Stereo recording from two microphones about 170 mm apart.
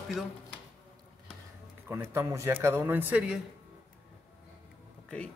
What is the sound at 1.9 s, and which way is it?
A man's voice, 15° right (ahead or behind).